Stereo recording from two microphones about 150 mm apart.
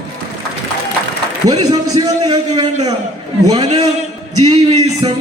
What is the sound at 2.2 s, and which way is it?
Music, 30° right (ahead or behind).